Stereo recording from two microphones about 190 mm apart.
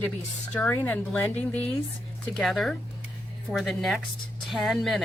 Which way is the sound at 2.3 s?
Centre (ahead or behind).